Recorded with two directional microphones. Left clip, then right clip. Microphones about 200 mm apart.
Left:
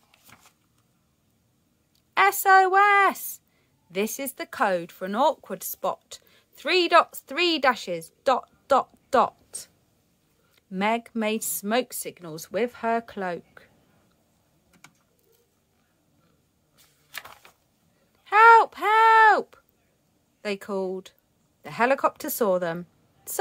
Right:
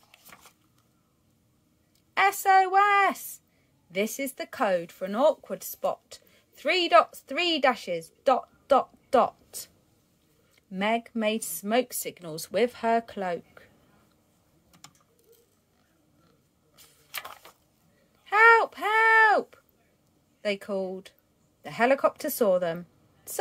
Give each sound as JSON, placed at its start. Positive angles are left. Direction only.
{"t": 2.1, "sound": "speech", "side_deg": 20}
{"t": 18.2, "sound": "a sound", "side_deg": 20}
{"t": 20.4, "sound": "a woman's voice", "side_deg": 20}